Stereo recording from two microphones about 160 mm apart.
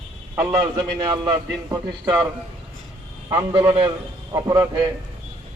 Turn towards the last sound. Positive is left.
turn(degrees=-20)  # may be behind; listen again after turning